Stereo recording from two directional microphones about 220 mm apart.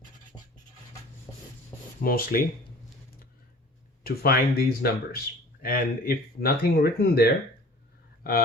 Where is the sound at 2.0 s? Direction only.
40° left (ahead or behind).